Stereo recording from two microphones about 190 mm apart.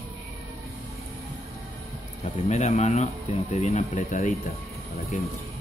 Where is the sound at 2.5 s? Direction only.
35° left (ahead or behind).